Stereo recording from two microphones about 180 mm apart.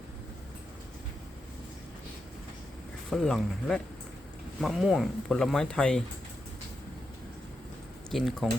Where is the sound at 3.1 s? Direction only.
5° left (ahead or behind).